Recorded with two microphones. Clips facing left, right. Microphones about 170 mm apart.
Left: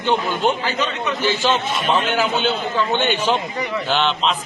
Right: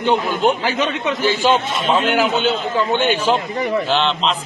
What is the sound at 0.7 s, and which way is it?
Speech, 60° right (ahead or behind).